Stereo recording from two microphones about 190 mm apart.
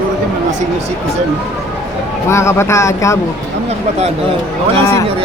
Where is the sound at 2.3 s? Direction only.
15° left (ahead or behind).